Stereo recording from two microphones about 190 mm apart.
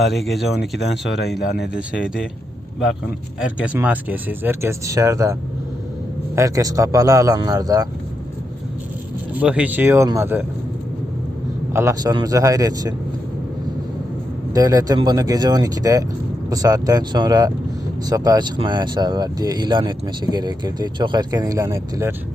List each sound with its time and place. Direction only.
0.0 s speech: centre (ahead or behind)
1.4 s speech: 60° left (ahead or behind)
1.7 s speech: 5° right (ahead or behind)
3.6 s speech: 5° right (ahead or behind)
9.3 s speech: 5° right (ahead or behind)
11.7 s speech: 15° right (ahead or behind)
14.5 s speech: 20° right (ahead or behind)